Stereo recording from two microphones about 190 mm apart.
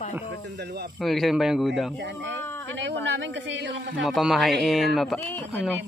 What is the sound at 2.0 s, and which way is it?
A man's voice, 65° right (ahead or behind).